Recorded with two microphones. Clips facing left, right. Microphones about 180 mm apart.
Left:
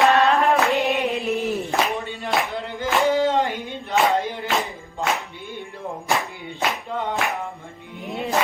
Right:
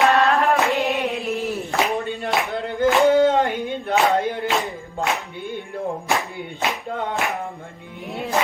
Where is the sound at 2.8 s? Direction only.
55° right (ahead or behind).